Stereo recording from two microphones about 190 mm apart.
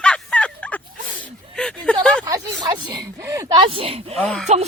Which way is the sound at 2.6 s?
25° right (ahead or behind).